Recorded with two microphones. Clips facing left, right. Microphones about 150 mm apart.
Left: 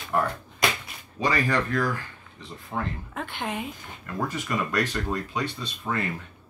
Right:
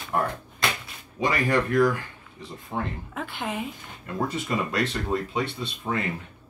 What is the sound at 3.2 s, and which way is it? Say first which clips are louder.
Speech: right 1 dB; 5° right (ahead or behind).